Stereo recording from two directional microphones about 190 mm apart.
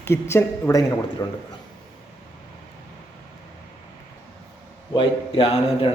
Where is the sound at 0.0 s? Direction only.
15° left (ahead or behind).